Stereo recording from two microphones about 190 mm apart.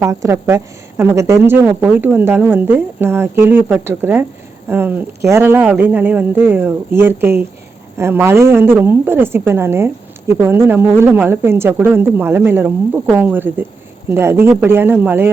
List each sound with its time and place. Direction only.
0.0 s a woman's voice: 15° right (ahead or behind)